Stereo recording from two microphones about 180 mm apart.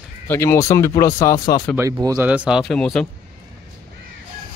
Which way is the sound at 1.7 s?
15° right (ahead or behind).